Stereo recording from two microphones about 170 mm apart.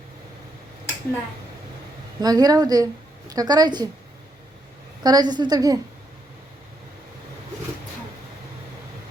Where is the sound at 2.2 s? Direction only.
20° right (ahead or behind).